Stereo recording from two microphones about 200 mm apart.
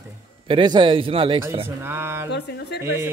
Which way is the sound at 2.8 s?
15° right (ahead or behind).